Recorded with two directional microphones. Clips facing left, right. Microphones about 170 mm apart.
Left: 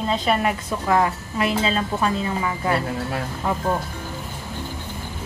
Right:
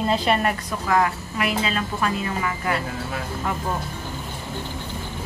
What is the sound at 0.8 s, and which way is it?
A woman's voice, 30° left (ahead or behind).